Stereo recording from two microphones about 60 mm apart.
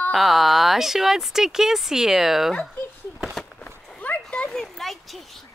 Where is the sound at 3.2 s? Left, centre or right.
Centre.